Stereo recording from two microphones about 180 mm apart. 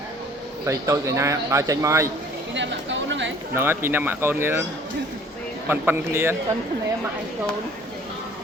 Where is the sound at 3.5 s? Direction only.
15° right (ahead or behind).